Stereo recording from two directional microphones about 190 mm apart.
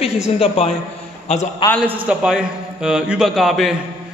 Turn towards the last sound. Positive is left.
turn(degrees=0)  # may be behind; listen again after turning